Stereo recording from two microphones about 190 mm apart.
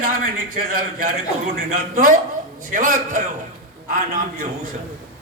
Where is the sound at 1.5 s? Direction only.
45° right (ahead or behind).